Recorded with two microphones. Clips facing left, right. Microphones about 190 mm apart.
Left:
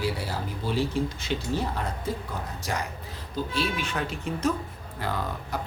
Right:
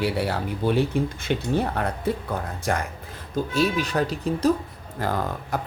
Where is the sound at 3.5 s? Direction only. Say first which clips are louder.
Right 8 dB; 40° right (ahead or behind).